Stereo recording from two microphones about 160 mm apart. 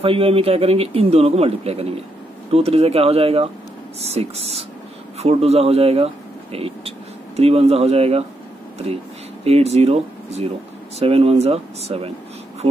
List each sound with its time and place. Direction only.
0.0 s speech: 35° right (ahead or behind)
9.4 s speech: 40° right (ahead or behind)